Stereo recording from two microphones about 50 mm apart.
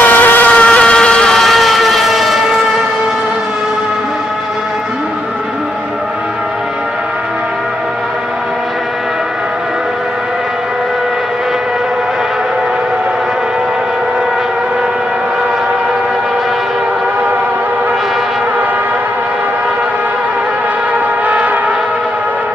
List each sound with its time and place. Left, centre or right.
0.0 s vehicle: left; by 1.4 s centre
1.4 s vehicle: centre
21.3 s a sound: right